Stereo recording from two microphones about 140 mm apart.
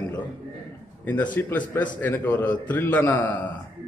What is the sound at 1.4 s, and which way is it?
A man's voice, 15° left (ahead or behind).